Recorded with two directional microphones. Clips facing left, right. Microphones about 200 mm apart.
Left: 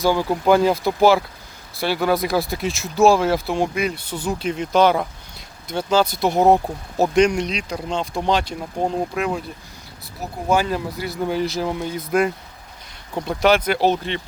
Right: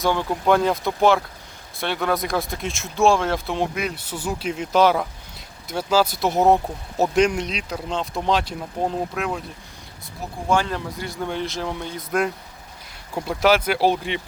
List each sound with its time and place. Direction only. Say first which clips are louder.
0.0 s speech: left 3 dB; 5° left (ahead or behind)
10.5 s speech: left 2 dB; 10° left (ahead or behind); by 14.2 s 10° right (ahead or behind)